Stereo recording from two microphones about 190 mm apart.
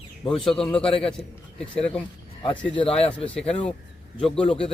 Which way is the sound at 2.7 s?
30° left (ahead or behind).